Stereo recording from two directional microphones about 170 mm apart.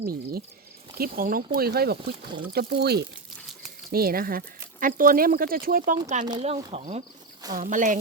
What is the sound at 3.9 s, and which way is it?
Speech, 60° right (ahead or behind).